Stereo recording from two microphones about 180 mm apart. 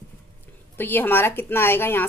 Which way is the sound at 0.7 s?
10° left (ahead or behind).